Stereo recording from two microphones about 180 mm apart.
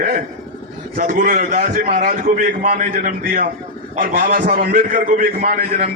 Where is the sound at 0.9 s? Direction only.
50° right (ahead or behind).